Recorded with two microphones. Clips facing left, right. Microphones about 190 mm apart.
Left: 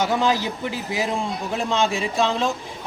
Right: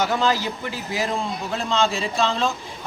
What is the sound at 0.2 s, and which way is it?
Speech, 20° left (ahead or behind).